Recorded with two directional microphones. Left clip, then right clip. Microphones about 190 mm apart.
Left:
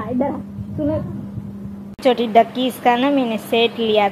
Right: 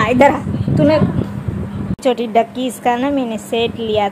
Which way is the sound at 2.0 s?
10° right (ahead or behind).